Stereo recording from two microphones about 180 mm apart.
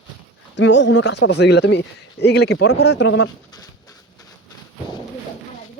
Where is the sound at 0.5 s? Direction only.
75° left (ahead or behind).